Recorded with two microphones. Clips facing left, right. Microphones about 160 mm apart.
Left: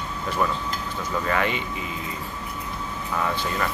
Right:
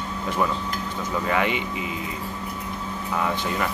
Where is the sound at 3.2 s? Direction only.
15° right (ahead or behind).